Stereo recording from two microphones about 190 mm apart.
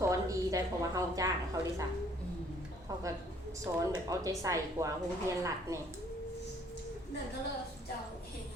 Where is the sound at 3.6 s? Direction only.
15° right (ahead or behind).